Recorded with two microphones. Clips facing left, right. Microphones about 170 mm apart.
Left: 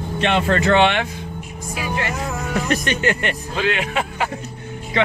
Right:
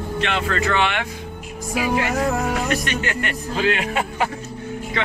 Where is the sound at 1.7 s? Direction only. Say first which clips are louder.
Right 4 dB; 75° right (ahead or behind); by 2.5 s 60° right (ahead or behind).